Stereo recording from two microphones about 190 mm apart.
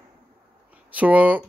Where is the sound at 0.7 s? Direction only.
10° right (ahead or behind).